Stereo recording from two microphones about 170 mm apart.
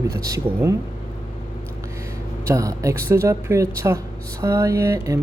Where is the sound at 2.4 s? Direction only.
20° right (ahead or behind).